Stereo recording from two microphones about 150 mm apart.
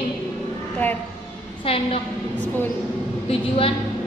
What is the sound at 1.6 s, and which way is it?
A woman's voice, 40° left (ahead or behind).